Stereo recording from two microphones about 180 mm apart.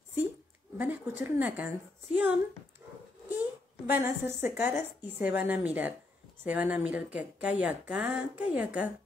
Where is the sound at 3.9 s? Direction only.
15° right (ahead or behind).